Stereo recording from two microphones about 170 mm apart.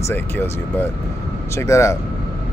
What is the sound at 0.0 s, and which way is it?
Speech, 10° left (ahead or behind).